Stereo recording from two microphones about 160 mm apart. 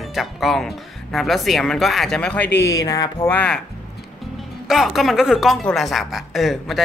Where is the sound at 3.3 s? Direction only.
10° left (ahead or behind).